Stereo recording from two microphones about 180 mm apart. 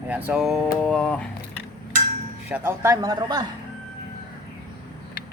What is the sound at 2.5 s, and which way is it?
Speech, 15° right (ahead or behind).